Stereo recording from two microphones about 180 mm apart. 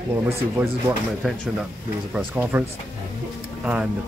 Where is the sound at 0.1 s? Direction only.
15° right (ahead or behind).